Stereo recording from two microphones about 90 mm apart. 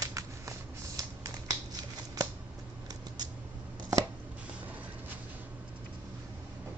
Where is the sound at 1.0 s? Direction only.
40° right (ahead or behind).